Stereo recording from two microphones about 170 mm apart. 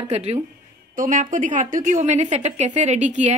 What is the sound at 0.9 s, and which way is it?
A woman's voice, 55° right (ahead or behind).